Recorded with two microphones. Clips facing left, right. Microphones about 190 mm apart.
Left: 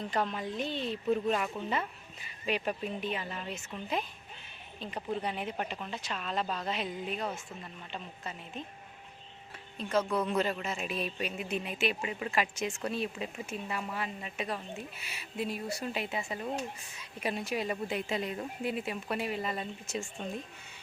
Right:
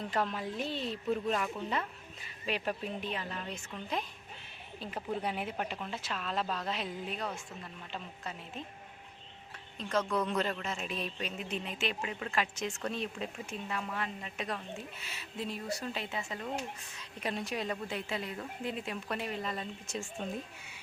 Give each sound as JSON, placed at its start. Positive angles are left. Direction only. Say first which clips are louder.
{"t": 0.1, "sound": "a woman's voice", "louder": "left 1 dB", "side_deg": 0}
{"t": 9.7, "sound": "speech", "louder": "left 2 dB", "side_deg": 10}
{"t": 18.7, "sound": "speech", "louder": "left 2 dB", "side_deg": 5}